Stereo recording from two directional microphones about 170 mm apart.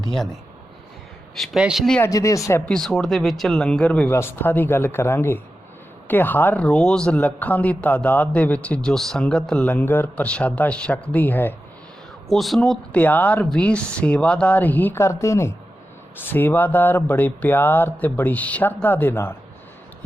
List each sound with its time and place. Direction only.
1.4 s speech: 5° right (ahead or behind)
2.0 s speech: 20° left (ahead or behind)
2.6 s speech: 5° left (ahead or behind)
12.3 s speech: centre (ahead or behind)